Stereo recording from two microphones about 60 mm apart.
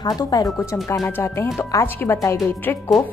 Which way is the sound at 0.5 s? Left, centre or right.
Left.